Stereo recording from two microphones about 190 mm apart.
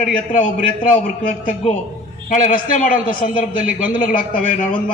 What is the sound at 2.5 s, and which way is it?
A man's voice, 45° left (ahead or behind).